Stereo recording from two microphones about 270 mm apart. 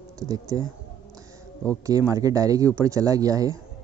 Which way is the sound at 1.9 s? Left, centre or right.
Centre.